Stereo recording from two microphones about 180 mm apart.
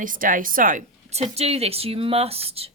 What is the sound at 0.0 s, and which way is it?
Speech, 50° right (ahead or behind).